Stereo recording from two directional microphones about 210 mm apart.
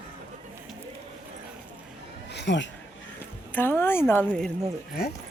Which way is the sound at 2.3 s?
55° left (ahead or behind).